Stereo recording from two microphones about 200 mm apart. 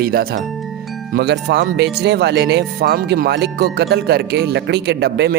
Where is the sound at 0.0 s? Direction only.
50° right (ahead or behind).